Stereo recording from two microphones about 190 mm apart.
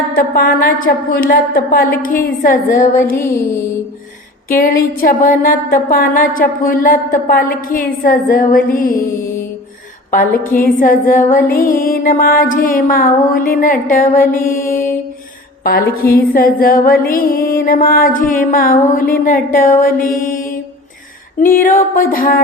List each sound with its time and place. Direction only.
0.1 s music: 50° left (ahead or behind)
3.0 s music: 15° left (ahead or behind)
4.4 s music: 45° left (ahead or behind)
10.5 s music: 45° left (ahead or behind)
16.0 s music: 50° left (ahead or behind)